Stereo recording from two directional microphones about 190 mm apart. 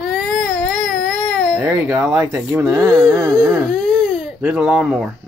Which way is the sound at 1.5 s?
10° right (ahead or behind).